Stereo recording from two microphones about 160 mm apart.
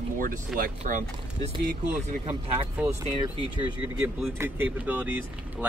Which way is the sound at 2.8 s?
10° right (ahead or behind).